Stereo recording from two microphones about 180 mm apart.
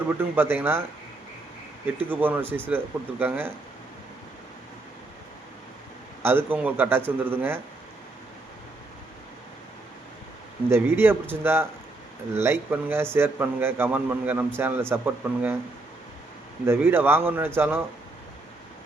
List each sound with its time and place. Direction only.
0.2 s a man's voice: 10° right (ahead or behind)
2.0 s a man's voice: 10° right (ahead or behind)
6.2 s a man's voice: 10° right (ahead or behind)
10.7 s a man's voice: 10° right (ahead or behind)
16.6 s a man's voice: 10° right (ahead or behind)